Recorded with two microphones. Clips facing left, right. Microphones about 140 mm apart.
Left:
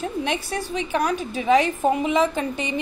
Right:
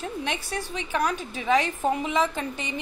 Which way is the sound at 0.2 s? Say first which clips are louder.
Left 5 dB; 15° left (ahead or behind).